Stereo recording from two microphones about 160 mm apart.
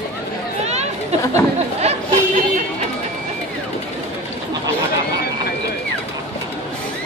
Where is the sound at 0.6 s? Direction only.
40° right (ahead or behind).